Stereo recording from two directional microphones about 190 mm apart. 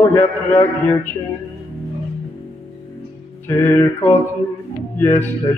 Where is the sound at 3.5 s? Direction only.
10° left (ahead or behind).